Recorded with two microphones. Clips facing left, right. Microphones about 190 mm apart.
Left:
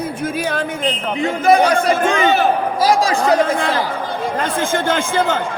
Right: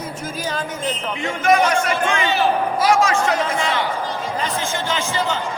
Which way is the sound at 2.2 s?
50° left (ahead or behind).